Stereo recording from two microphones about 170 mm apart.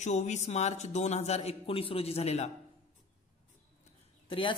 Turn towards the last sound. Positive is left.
turn(degrees=30)  # may be behind; listen again after turning